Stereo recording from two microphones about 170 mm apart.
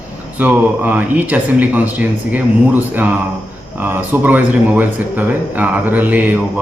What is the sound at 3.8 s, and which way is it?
Speech, 10° right (ahead or behind).